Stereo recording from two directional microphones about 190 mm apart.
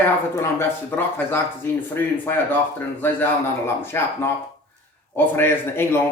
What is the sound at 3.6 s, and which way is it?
Speech, 10° left (ahead or behind).